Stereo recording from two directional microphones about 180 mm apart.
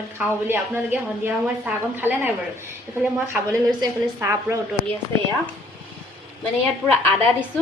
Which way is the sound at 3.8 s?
15° right (ahead or behind).